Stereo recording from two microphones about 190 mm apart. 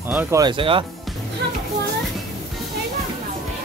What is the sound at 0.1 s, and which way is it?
Music, 10° right (ahead or behind).